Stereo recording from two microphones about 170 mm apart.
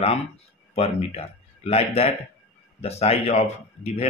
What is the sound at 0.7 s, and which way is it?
Speech, 35° left (ahead or behind).